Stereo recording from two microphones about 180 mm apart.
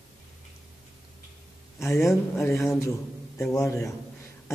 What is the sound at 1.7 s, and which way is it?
A man's voice, 15° left (ahead or behind).